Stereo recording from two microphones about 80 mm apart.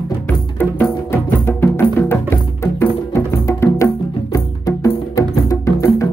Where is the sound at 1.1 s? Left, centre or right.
Left.